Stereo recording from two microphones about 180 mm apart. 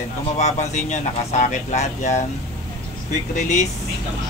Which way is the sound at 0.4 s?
40° left (ahead or behind).